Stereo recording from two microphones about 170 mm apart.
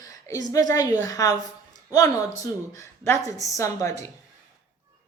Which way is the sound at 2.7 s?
20° left (ahead or behind).